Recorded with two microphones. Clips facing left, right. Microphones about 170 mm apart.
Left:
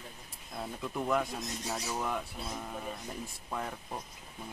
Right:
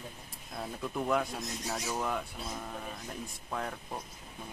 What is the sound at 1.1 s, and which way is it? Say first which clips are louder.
Speech: even; centre (ahead or behind).